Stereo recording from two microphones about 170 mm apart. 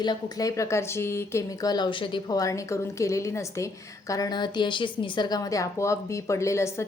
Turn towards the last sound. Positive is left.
turn(degrees=15)  # may be behind; listen again after turning